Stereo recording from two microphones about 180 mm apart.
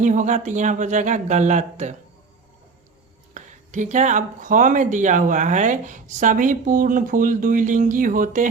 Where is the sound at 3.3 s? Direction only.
40° right (ahead or behind).